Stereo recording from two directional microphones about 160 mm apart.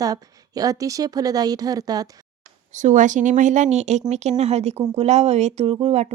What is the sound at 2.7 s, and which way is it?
Speech, 50° right (ahead or behind).